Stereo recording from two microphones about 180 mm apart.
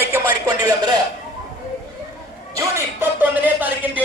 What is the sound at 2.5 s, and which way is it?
Speech, 15° right (ahead or behind).